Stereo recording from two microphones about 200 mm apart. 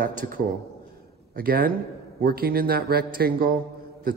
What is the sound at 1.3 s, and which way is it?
A man's voice, 45° right (ahead or behind).